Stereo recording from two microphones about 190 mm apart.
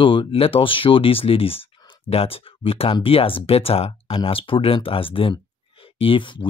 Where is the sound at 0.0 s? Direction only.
30° left (ahead or behind).